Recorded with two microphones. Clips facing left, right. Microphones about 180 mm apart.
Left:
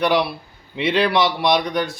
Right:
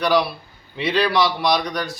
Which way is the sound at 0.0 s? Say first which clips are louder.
Even; 25° left (ahead or behind).